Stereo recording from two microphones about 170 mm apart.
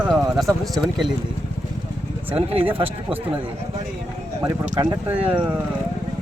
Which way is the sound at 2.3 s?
35° right (ahead or behind).